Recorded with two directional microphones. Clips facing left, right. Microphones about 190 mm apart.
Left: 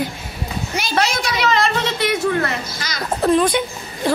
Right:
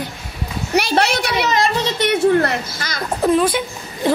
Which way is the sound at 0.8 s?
65° right (ahead or behind).